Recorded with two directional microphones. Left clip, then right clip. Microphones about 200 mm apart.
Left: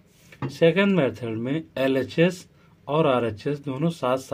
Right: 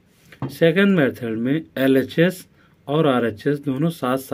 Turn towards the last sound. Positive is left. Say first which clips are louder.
# right 2 dB
turn(degrees=-35)  # may be behind; listen again after turning